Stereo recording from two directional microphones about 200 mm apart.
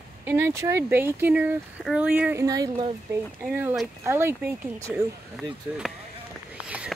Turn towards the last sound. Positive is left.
turn(degrees=-5)  # may be behind; listen again after turning